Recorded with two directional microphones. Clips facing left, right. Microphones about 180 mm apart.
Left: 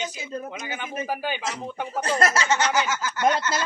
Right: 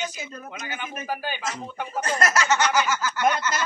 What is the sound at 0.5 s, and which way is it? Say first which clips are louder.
Speech: left 2 dB; 15° left (ahead or behind).